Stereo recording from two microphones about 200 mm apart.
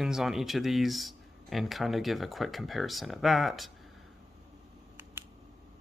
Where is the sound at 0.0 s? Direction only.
Centre (ahead or behind).